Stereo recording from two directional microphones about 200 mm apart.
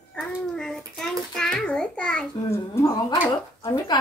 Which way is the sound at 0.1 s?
Centre (ahead or behind).